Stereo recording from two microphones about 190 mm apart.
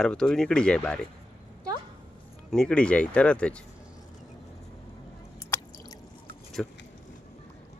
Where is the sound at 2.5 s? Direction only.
5° left (ahead or behind).